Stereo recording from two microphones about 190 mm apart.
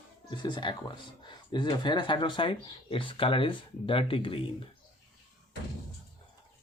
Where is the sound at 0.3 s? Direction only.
25° left (ahead or behind).